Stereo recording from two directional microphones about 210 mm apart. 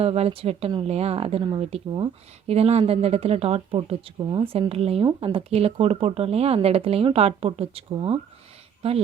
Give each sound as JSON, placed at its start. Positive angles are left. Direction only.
{"t": 0.0, "sound": "speech", "side_deg": -30}